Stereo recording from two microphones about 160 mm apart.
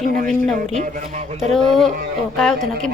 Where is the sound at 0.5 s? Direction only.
50° right (ahead or behind).